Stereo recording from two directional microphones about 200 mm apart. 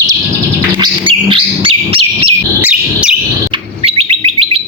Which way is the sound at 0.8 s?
25° right (ahead or behind).